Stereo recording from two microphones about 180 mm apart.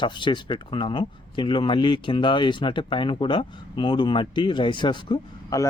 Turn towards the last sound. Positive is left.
turn(degrees=20)  # may be behind; listen again after turning